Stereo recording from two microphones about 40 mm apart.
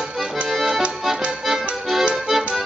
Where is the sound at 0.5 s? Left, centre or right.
Centre.